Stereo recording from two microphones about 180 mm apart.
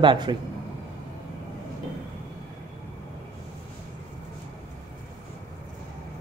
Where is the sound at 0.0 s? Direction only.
25° right (ahead or behind).